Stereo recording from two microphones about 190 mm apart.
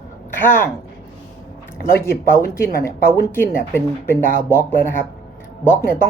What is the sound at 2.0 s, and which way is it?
A woman's voice, 15° left (ahead or behind).